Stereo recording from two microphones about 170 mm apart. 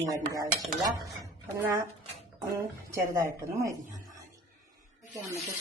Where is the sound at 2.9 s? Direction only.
15° right (ahead or behind).